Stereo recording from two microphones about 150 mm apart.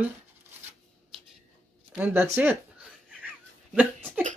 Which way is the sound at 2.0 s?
15° right (ahead or behind).